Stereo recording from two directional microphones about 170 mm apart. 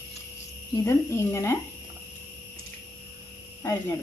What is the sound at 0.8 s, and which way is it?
Speech, 15° left (ahead or behind).